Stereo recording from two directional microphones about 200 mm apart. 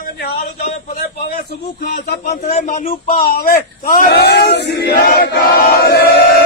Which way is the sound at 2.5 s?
35° left (ahead or behind).